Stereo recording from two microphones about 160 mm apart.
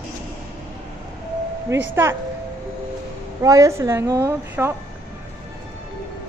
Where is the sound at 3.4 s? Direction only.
20° right (ahead or behind).